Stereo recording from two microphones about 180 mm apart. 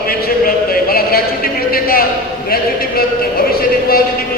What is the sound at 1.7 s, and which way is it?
Speech, 55° left (ahead or behind).